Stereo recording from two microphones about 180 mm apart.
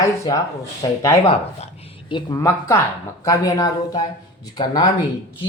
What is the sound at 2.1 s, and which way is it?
Speech, 20° left (ahead or behind).